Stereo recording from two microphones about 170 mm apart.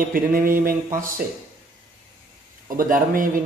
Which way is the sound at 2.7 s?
55° right (ahead or behind).